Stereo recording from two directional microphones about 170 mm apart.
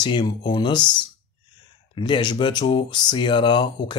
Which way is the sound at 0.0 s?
25° left (ahead or behind).